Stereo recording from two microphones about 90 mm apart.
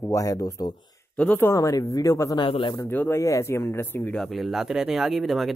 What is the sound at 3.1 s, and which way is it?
Speech, 35° left (ahead or behind).